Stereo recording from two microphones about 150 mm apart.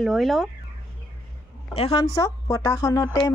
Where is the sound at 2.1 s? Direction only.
25° left (ahead or behind).